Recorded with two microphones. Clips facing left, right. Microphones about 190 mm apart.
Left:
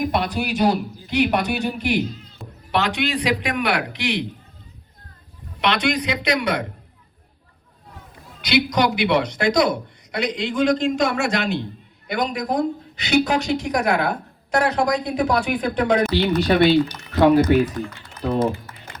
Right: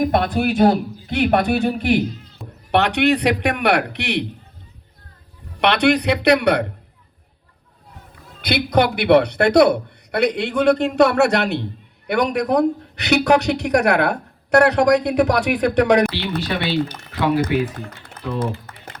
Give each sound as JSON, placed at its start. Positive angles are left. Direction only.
{"t": 0.0, "sound": "a man's voice", "side_deg": -55}
{"t": 2.4, "sound": "a sound", "side_deg": 0}
{"t": 2.7, "sound": "a man's voice", "side_deg": -65}
{"t": 5.5, "sound": "a man's voice", "side_deg": -65}
{"t": 8.4, "sound": "a man's voice", "side_deg": -55}
{"t": 16.0, "sound": "speech", "side_deg": 40}
{"t": 16.7, "sound": "a man's voice", "side_deg": -55}
{"t": 17.2, "sound": "speech", "side_deg": 45}
{"t": 17.7, "sound": "speech", "side_deg": -60}